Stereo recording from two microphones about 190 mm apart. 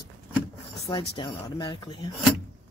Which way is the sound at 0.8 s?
25° left (ahead or behind).